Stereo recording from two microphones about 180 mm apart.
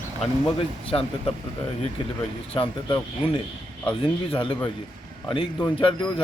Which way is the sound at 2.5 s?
30° left (ahead or behind).